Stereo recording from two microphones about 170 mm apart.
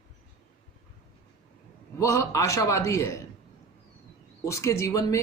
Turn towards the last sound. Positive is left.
turn(degrees=20)  # may be behind; listen again after turning